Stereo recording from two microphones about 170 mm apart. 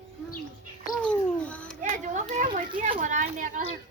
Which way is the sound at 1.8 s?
50° right (ahead or behind).